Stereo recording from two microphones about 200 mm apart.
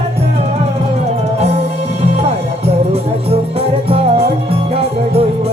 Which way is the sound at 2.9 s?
30° right (ahead or behind).